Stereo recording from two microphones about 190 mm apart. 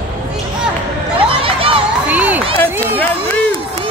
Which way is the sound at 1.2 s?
30° right (ahead or behind).